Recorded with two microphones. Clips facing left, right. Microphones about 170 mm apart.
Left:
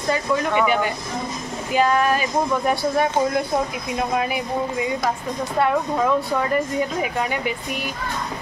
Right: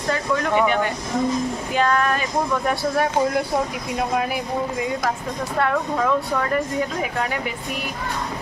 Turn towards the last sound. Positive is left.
turn(degrees=10)  # may be behind; listen again after turning